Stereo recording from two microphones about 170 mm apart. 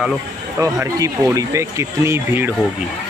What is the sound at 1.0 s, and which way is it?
Speech, 20° right (ahead or behind).